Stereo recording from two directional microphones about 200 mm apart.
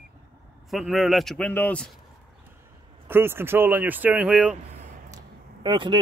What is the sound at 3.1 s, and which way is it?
Speech, 10° right (ahead or behind).